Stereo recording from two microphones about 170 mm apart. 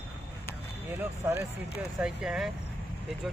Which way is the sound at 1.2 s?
15° right (ahead or behind).